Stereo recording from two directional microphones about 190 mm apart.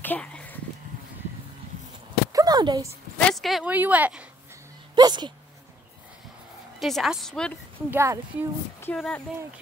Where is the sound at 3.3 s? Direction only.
Centre (ahead or behind); by 5.3 s 20° right (ahead or behind).